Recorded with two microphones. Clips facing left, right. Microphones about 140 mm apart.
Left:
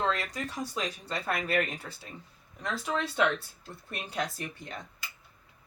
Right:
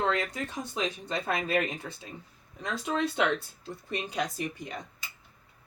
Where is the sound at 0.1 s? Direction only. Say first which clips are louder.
Right 2 dB; 20° right (ahead or behind).